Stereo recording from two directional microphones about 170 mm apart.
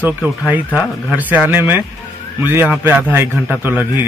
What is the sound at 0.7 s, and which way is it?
A man's voice, 10° right (ahead or behind).